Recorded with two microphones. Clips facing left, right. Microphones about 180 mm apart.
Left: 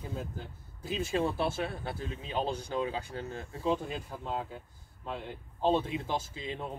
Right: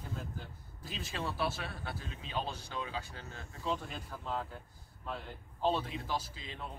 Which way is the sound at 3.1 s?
35° left (ahead or behind).